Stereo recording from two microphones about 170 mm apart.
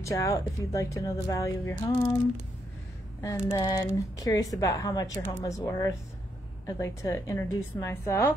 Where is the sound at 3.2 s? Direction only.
20° left (ahead or behind).